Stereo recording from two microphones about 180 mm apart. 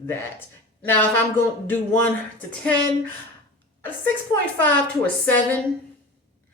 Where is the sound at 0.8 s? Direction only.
10° left (ahead or behind).